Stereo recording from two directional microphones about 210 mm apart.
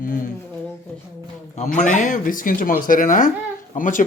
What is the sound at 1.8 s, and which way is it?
Speech, 35° left (ahead or behind).